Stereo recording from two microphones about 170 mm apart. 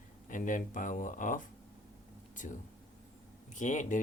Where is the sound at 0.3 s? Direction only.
50° left (ahead or behind).